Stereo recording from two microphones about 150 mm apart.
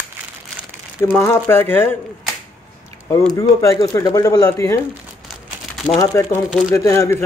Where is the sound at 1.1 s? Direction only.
15° left (ahead or behind).